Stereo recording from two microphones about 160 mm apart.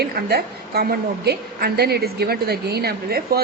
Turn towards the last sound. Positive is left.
turn(degrees=-75)  # may be behind; listen again after turning